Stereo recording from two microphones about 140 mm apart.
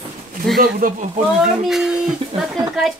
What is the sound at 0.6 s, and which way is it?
Speech, 85° right.